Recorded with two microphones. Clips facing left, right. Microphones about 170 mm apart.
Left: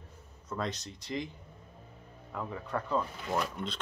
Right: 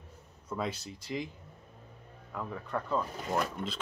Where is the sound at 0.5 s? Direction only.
5° right (ahead or behind).